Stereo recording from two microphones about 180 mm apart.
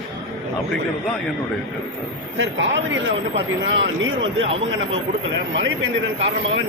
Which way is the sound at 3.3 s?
75° right (ahead or behind).